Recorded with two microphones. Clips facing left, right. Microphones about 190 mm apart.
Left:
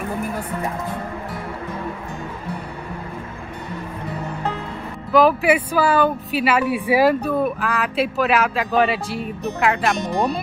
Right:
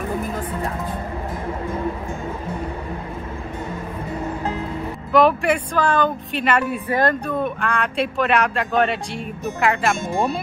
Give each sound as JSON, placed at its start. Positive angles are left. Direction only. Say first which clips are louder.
{"t": 5.1, "sound": "speech", "louder": "left 1 dB", "side_deg": 5}
{"t": 10.1, "sound": "speech", "louder": "left 1 dB", "side_deg": -25}